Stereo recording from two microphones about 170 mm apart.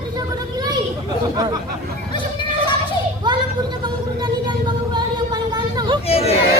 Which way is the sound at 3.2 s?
25° right (ahead or behind).